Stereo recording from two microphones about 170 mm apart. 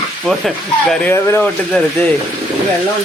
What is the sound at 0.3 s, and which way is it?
Speech, centre (ahead or behind).